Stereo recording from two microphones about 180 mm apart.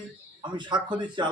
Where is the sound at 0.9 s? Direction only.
25° right (ahead or behind).